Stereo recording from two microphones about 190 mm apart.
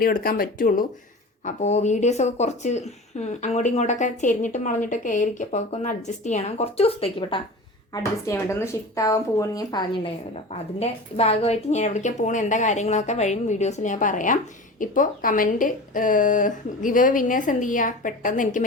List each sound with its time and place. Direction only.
0.0 s a woman's voice: 50° left (ahead or behind)
1.5 s speech: 35° left (ahead or behind)
8.3 s a woman's voice: 15° left (ahead or behind)
10.5 s a woman's voice: 35° left (ahead or behind)